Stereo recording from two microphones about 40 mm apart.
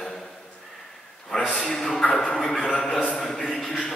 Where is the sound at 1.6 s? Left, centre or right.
Centre.